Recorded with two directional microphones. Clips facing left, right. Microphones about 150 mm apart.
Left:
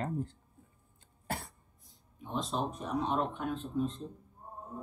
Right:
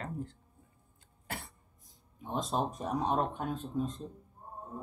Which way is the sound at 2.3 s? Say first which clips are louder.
Right 2 dB; 45° right (ahead or behind).